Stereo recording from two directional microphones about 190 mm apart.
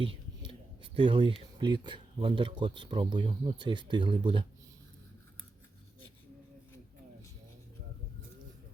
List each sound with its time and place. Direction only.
0.0 s speech: 25° right (ahead or behind)